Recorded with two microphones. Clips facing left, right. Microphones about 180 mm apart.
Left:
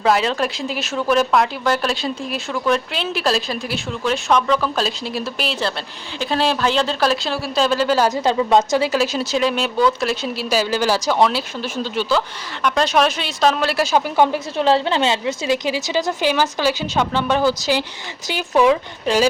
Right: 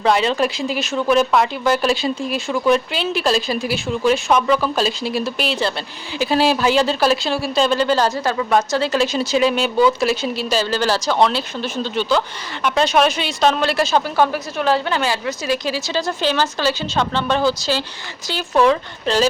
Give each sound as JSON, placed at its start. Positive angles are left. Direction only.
{"t": 0.0, "sound": "speech", "side_deg": 0}
{"t": 8.1, "sound": "speech", "side_deg": 20}
{"t": 14.3, "sound": "speech", "side_deg": 25}